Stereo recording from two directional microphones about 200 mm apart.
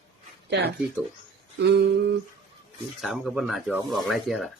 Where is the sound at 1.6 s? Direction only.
60° right (ahead or behind).